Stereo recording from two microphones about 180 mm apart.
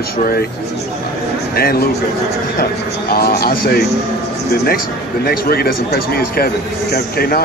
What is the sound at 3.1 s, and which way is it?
Speech, 55° left (ahead or behind).